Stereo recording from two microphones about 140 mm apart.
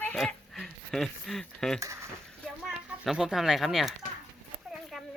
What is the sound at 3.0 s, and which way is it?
Speech, 5° right (ahead or behind).